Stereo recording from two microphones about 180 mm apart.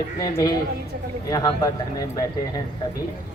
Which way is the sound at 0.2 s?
20° left (ahead or behind).